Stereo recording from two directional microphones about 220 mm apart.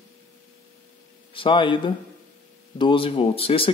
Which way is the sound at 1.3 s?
20° left (ahead or behind).